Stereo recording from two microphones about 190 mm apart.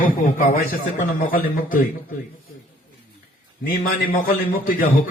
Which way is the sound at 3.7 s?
50° left (ahead or behind).